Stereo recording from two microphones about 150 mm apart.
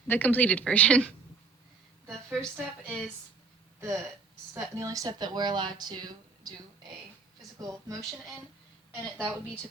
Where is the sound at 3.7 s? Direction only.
20° right (ahead or behind).